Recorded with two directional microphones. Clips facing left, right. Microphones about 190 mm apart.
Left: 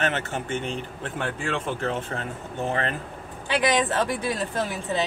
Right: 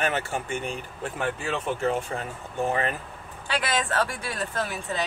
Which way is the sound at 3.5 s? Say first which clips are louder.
Left 5 dB; 15° left (ahead or behind).